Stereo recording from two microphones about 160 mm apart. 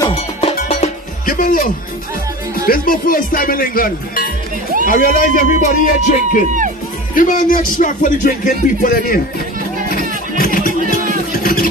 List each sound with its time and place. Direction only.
0.4 s music: 40° left (ahead or behind)
2.5 s speech: 65° left (ahead or behind)
9.8 s music: 65° left (ahead or behind)
10.7 s music: 55° right (ahead or behind)
11.3 s vehicle: 60° left (ahead or behind)